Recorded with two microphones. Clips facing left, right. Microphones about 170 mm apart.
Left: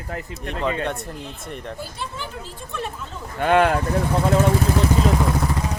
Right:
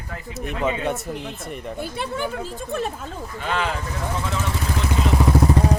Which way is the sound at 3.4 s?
55° left (ahead or behind).